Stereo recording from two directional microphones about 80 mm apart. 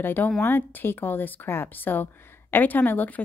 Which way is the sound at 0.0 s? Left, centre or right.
Left.